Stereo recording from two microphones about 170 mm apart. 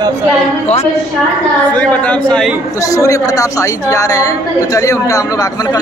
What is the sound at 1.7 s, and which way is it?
Speech, 5° left (ahead or behind).